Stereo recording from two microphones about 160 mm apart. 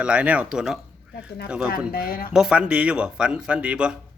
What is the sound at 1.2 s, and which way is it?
Speech, 90° left.